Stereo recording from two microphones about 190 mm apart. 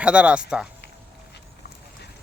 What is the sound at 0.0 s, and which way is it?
Speech, 5° right (ahead or behind).